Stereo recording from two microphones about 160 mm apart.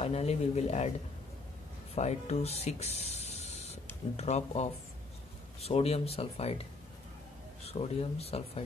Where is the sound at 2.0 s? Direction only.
45° left (ahead or behind).